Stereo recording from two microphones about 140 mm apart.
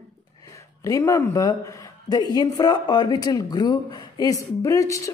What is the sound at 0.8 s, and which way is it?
Speech, 20° left (ahead or behind).